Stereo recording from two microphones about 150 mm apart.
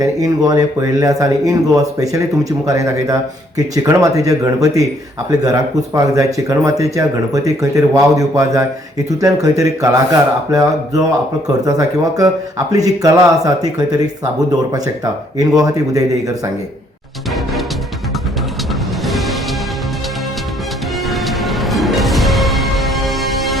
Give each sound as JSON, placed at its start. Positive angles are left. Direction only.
{"t": 0.0, "sound": "speech", "side_deg": -25}
{"t": 19.0, "sound": "music", "side_deg": 0}
{"t": 21.1, "sound": "music", "side_deg": 0}